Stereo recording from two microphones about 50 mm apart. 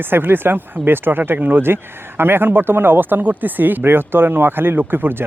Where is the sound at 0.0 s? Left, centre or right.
Right.